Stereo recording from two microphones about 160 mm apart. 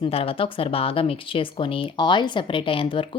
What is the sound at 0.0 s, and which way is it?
Speech, 35° left (ahead or behind).